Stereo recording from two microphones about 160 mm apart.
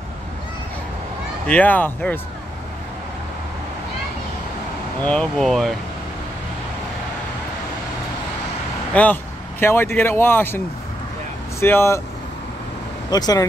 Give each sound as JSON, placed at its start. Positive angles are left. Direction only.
{"t": 1.5, "sound": "speech", "side_deg": 10}
{"t": 5.0, "sound": "speech", "side_deg": 5}
{"t": 8.9, "sound": "speech", "side_deg": 10}
{"t": 11.6, "sound": "speech", "side_deg": 15}
{"t": 13.1, "sound": "speech", "side_deg": 25}